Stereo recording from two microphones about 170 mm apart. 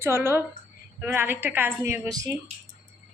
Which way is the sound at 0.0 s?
15° right (ahead or behind).